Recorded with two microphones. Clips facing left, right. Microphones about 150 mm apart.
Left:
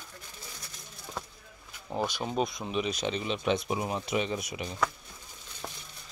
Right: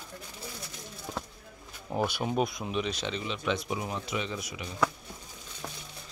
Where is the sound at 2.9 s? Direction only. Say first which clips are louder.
Left 3 dB; 15° left (ahead or behind).